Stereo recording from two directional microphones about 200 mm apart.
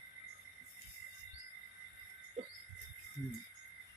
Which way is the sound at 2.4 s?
35° right (ahead or behind).